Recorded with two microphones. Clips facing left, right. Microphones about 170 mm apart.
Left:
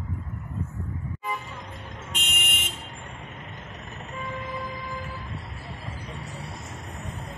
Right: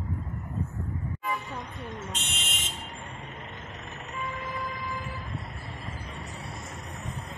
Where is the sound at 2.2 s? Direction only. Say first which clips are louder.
Left 3 dB; 55° left (ahead or behind).